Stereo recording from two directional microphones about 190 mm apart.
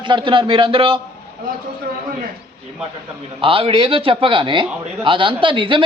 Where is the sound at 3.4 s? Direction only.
30° right (ahead or behind).